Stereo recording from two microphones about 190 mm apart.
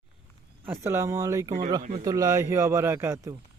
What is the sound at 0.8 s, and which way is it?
Speech, 15° right (ahead or behind).